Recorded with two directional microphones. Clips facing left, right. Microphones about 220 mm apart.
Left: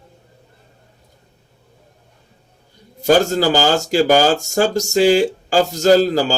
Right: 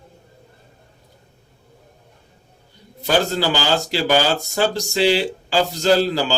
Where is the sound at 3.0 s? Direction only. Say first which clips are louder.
Left 5 dB; 45° left (ahead or behind).